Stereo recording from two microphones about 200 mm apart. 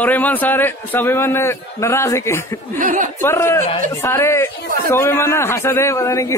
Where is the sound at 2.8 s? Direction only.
40° right (ahead or behind).